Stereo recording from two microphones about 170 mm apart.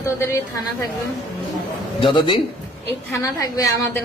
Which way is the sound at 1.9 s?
30° left (ahead or behind).